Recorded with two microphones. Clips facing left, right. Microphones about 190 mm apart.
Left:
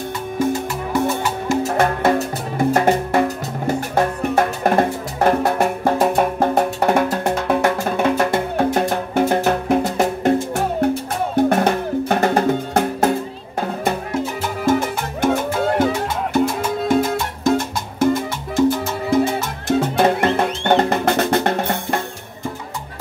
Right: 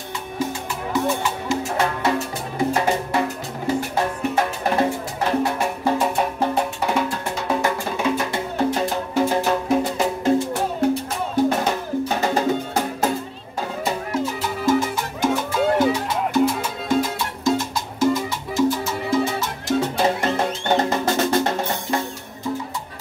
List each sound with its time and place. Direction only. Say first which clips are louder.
0.4 s music: left 6 dB; 50° left (ahead or behind)
14.7 s music: left 1 dB; 55° left (ahead or behind)
17.6 s music: left 2 dB; 55° left (ahead or behind)